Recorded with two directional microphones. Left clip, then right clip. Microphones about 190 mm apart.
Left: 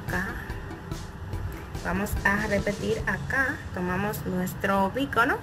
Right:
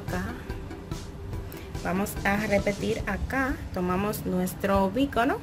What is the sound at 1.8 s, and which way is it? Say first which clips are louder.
Speech: even; 30° right (ahead or behind).